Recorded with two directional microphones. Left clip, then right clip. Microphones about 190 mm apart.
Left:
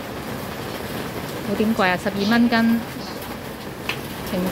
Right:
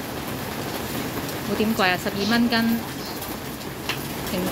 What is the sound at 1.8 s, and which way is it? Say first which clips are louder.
Speech: left 1 dB; 15° left (ahead or behind).